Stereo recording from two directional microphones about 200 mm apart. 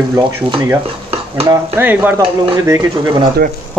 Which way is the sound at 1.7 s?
10° right (ahead or behind).